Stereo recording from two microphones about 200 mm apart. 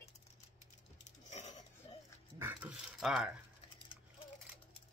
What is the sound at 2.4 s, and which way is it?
Dog, 10° right (ahead or behind).